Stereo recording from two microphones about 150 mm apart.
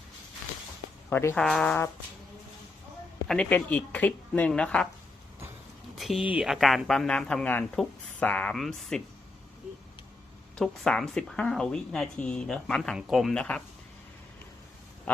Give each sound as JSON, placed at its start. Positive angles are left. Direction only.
{"t": 1.1, "sound": "speech", "side_deg": 15}
{"t": 1.4, "sound": "speech", "side_deg": 5}
{"t": 3.2, "sound": "speech", "side_deg": 10}
{"t": 6.0, "sound": "a sound", "side_deg": 0}
{"t": 6.3, "sound": "speech", "side_deg": 0}
{"t": 10.6, "sound": "speech", "side_deg": 5}